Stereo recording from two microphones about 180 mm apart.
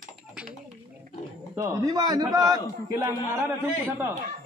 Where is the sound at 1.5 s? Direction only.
20° right (ahead or behind).